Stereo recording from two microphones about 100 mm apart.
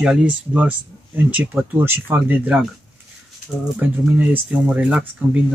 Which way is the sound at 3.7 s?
15° right (ahead or behind).